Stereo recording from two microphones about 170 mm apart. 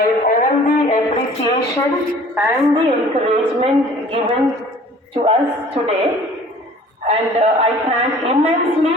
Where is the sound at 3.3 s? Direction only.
35° right (ahead or behind).